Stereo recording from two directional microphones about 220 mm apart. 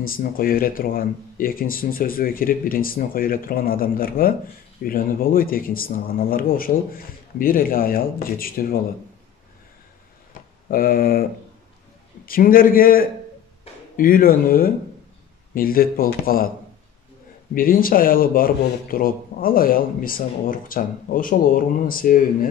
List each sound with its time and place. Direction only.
0.0 s speech: 40° left (ahead or behind)
10.7 s speech: 40° left (ahead or behind)
12.3 s speech: 40° left (ahead or behind)
17.6 s speech: 40° left (ahead or behind)